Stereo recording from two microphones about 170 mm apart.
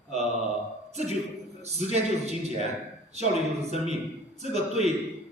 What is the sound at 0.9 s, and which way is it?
A man's voice, 40° right (ahead or behind).